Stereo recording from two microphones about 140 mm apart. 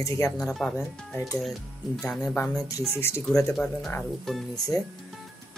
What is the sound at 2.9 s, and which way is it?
Speech, 20° left (ahead or behind).